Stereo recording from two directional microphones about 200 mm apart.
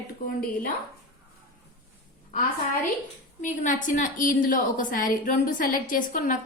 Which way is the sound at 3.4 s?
40° left (ahead or behind).